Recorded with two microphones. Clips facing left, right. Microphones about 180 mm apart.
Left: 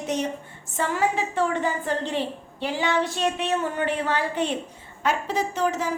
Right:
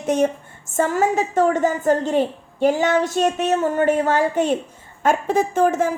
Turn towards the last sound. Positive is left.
turn(degrees=-50)  # may be behind; listen again after turning